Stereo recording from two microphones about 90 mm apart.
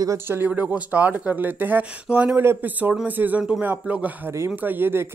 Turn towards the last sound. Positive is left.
turn(degrees=-25)  # may be behind; listen again after turning